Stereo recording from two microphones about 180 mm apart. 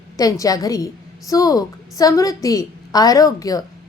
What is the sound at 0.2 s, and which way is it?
A woman's voice, 20° left (ahead or behind).